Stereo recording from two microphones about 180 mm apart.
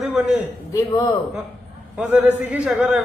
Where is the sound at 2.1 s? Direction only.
5° right (ahead or behind).